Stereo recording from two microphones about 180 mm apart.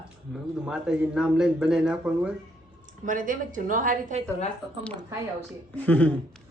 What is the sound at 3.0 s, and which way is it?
A woman's voice, 45° right (ahead or behind).